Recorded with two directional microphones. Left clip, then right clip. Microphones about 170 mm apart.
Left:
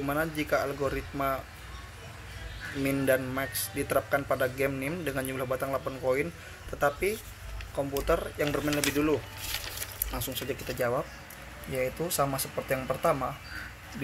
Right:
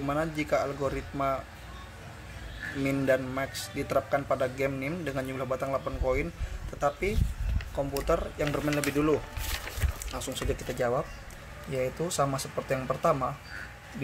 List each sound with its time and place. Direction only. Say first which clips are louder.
0.0 s a man's voice: even; centre (ahead or behind)
2.8 s a man's voice: even; centre (ahead or behind)
8.7 s speech: right 2 dB; 15° right (ahead or behind)
10.8 s a man's voice: even; 5° right (ahead or behind)